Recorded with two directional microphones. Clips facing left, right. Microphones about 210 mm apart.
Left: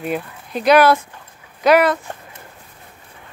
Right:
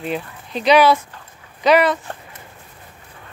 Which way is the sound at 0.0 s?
10° left (ahead or behind).